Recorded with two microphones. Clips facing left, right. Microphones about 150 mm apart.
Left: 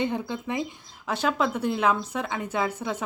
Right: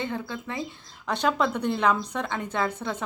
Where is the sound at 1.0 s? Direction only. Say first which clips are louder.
Right 1 dB; 5° left (ahead or behind).